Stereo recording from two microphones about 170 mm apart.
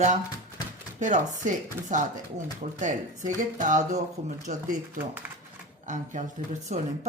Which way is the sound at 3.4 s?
50° right (ahead or behind).